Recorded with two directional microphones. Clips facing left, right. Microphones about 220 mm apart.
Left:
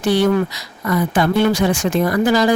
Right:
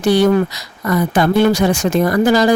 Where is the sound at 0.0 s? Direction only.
40° right (ahead or behind).